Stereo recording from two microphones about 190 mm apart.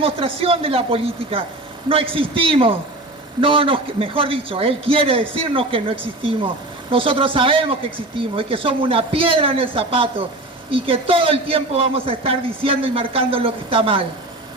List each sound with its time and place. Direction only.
0.0 s speech: 30° right (ahead or behind)